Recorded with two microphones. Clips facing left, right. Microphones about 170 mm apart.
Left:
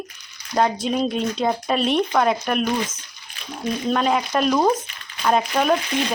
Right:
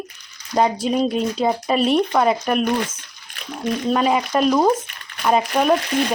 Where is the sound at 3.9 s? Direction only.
5° right (ahead or behind).